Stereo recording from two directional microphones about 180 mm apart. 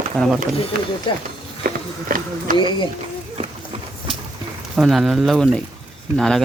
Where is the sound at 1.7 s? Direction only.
50° right (ahead or behind).